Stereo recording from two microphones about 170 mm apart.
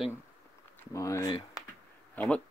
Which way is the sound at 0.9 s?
20° left (ahead or behind).